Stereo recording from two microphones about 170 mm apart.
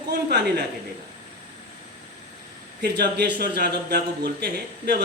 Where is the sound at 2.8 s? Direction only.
80° right.